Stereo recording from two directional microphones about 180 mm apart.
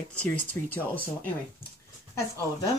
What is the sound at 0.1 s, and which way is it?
Speech, 5° left (ahead or behind).